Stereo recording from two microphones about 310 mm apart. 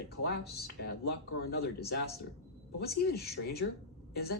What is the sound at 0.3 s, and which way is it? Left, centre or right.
Speech, left.